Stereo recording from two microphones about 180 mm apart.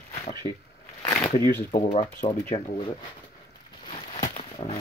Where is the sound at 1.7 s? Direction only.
30° left (ahead or behind).